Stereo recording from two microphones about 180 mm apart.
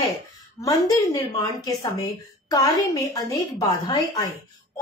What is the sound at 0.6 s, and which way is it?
A woman's voice, 20° left (ahead or behind).